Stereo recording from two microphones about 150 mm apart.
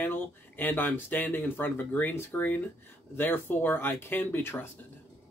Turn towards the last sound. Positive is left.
turn(degrees=15)  # may be behind; listen again after turning